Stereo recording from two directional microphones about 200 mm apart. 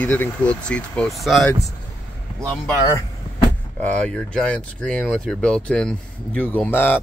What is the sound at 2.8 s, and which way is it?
Vehicle, 20° left (ahead or behind).